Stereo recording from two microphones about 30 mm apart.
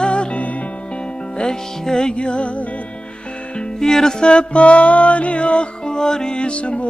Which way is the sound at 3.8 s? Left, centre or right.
Centre.